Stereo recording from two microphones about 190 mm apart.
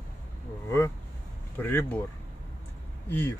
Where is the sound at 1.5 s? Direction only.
10° left (ahead or behind).